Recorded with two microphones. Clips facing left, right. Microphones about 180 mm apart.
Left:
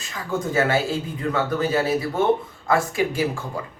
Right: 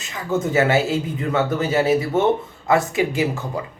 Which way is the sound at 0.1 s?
20° right (ahead or behind).